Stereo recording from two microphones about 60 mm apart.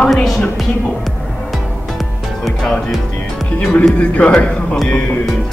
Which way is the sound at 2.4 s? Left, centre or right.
Centre.